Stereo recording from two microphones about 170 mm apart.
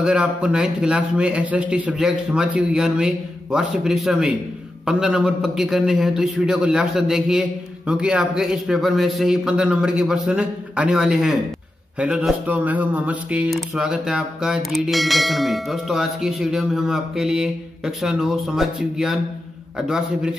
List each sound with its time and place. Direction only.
0.0 s speech: 5° right (ahead or behind)